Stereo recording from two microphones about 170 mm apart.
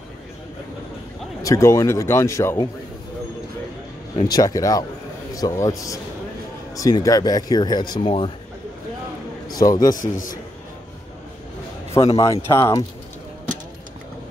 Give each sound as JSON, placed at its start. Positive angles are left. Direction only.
{"t": 1.4, "sound": "a man's voice", "side_deg": 15}
{"t": 4.2, "sound": "speech", "side_deg": 20}
{"t": 9.5, "sound": "speech", "side_deg": 20}
{"t": 9.8, "sound": "a man's voice", "side_deg": 55}
{"t": 11.9, "sound": "a man's voice", "side_deg": 20}